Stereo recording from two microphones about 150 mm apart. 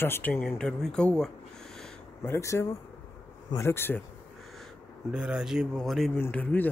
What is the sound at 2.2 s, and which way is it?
Speech, 20° left (ahead or behind).